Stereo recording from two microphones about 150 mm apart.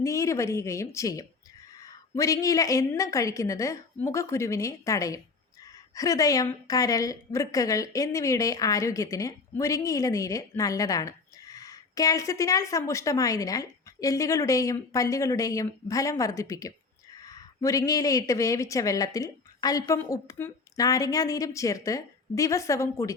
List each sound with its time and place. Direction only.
0.0 s a woman's voice: 20° left (ahead or behind)